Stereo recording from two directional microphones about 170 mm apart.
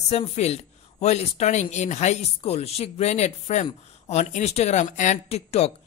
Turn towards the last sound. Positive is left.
turn(degrees=40)  # may be behind; listen again after turning